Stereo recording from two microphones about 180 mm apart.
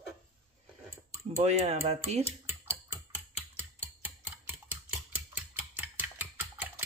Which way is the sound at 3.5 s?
10° right (ahead or behind).